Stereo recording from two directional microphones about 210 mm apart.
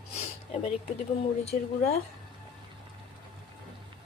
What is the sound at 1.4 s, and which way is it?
Speech, 30° left (ahead or behind).